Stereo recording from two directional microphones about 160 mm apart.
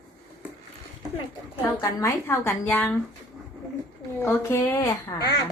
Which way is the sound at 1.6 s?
20° left (ahead or behind).